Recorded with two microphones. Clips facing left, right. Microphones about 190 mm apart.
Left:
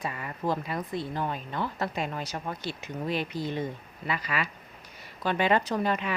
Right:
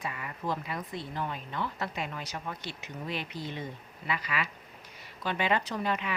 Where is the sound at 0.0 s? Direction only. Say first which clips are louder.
Left 4 dB; 40° left (ahead or behind).